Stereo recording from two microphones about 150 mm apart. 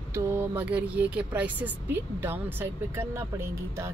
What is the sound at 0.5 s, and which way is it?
Speech, 10° right (ahead or behind).